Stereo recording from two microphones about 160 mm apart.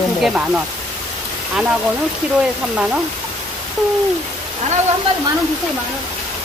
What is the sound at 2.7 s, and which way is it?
Speech, 5° right (ahead or behind).